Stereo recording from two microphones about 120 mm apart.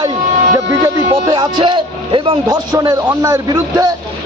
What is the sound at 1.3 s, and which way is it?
A man's voice, 35° right (ahead or behind).